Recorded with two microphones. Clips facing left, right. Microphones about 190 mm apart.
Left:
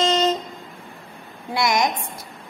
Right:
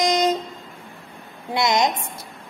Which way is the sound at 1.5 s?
20° right (ahead or behind).